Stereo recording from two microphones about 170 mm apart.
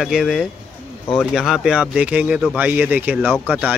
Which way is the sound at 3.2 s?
5° left (ahead or behind).